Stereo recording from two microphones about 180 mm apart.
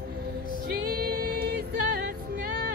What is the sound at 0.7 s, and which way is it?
Music, 55° right (ahead or behind).